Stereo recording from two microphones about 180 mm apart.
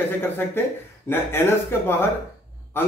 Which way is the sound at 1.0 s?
10° left (ahead or behind).